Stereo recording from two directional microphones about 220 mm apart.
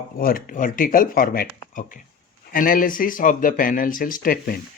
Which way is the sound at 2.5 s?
40° left (ahead or behind).